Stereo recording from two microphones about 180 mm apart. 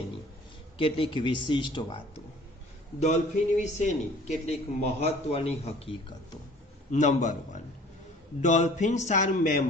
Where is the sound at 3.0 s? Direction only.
40° left (ahead or behind).